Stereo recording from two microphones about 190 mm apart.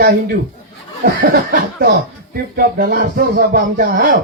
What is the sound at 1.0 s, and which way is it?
Speech, 55° right (ahead or behind).